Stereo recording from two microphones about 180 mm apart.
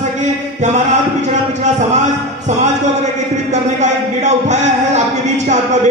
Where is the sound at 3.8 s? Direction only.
40° right (ahead or behind).